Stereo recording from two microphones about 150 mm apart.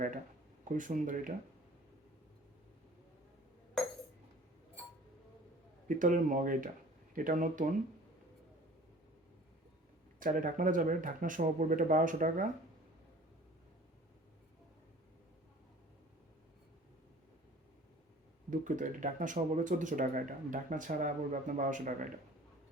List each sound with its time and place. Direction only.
0.6 s speech: 65° right (ahead or behind)
6.0 s speech: 60° right (ahead or behind)
10.2 s speech: 65° right (ahead or behind)
18.5 s speech: 60° right (ahead or behind)